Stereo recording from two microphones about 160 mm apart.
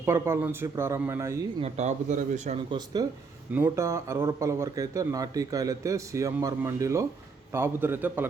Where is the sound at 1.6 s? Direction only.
45° right (ahead or behind).